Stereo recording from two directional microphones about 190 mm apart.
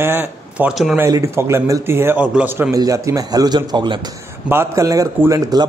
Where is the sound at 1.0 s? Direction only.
15° right (ahead or behind).